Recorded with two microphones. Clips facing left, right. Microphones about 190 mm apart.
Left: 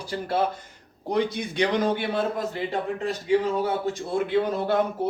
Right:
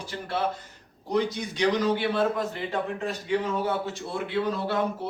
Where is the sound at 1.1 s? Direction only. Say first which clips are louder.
Left 2 dB; 55° left (ahead or behind).